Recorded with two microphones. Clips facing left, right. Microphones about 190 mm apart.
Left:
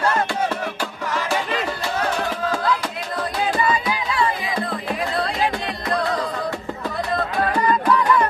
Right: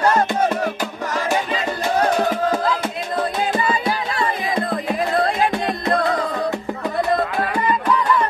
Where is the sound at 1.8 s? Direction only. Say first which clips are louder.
Right 5 dB; 20° right (ahead or behind).